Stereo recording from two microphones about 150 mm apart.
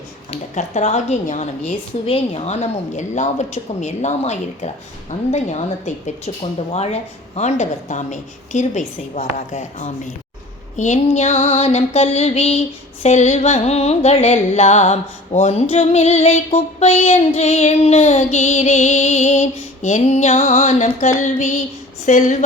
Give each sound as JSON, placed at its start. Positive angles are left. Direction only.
{"t": 0.3, "sound": "child singing", "side_deg": 50}
{"t": 22.0, "sound": "a woman's voice", "side_deg": 55}